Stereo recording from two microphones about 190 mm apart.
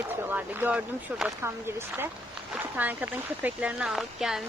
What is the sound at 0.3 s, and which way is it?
Speech, 10° right (ahead or behind).